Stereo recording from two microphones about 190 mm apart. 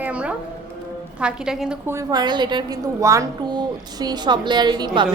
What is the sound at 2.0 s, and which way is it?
A woman's voice, 20° right (ahead or behind).